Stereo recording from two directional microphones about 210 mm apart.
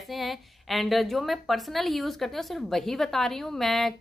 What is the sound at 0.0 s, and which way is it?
A woman's voice, centre (ahead or behind).